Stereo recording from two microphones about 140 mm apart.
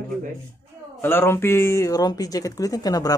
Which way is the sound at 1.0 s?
15° left (ahead or behind).